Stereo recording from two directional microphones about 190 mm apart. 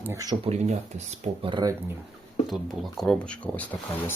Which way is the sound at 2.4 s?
Centre (ahead or behind).